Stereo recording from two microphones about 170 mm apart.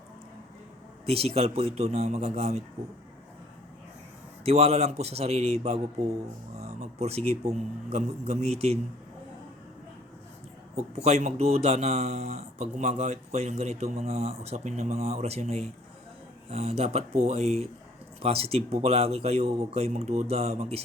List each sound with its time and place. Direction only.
1.0 s a man's voice: 35° right (ahead or behind)
4.4 s a man's voice: 40° right (ahead or behind)
6.6 s a sound: 40° right (ahead or behind)
7.9 s a man's voice: 35° right (ahead or behind)
10.8 s a man's voice: 40° right (ahead or behind)